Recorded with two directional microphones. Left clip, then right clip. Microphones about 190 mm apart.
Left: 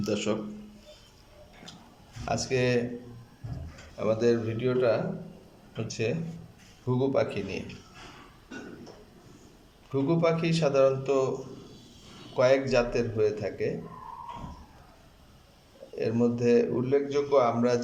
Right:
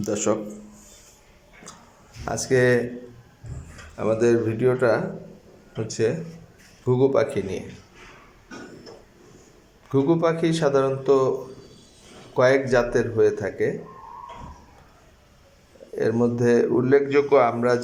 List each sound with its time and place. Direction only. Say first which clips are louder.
0.0 s speech: right 6 dB; 5° right (ahead or behind)
2.2 s speech: right 7 dB; centre (ahead or behind)
3.9 s speech: right 5 dB; centre (ahead or behind)
6.0 s speech: right 8 dB; centre (ahead or behind)
9.9 s speech: right 5 dB; 5° left (ahead or behind)
12.4 s speech: right 5 dB; centre (ahead or behind)
16.0 s speech: right 6 dB; centre (ahead or behind)
16.9 s a man's voice: right 7 dB; 25° right (ahead or behind)
17.6 s speech: right 5 dB; centre (ahead or behind)